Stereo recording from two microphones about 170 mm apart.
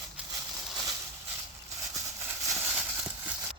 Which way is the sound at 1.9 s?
15° right (ahead or behind).